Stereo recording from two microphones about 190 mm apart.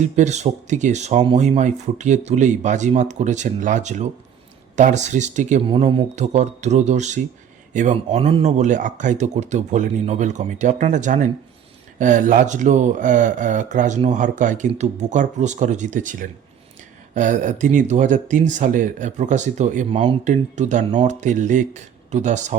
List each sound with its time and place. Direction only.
0.0 s speech: 40° right (ahead or behind)